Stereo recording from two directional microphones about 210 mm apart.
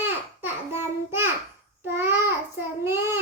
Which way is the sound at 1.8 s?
10° right (ahead or behind).